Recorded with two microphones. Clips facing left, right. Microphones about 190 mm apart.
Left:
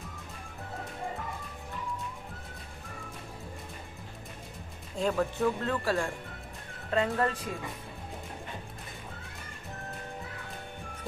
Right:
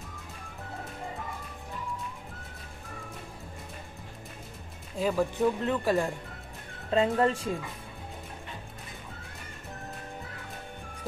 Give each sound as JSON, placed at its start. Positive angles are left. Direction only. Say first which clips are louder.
{"t": 4.9, "sound": "speech", "louder": "right 1 dB", "side_deg": -5}
{"t": 5.4, "sound": "speech", "louder": "right 2 dB", "side_deg": -20}